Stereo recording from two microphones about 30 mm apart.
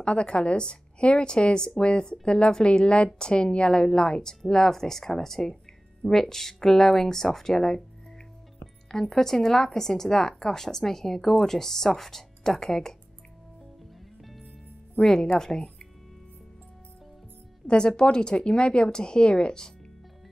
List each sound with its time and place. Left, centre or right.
0.0 s a woman's voice: left; by 7.8 s centre
8.9 s speech: centre
15.0 s speech: centre
17.6 s speech: left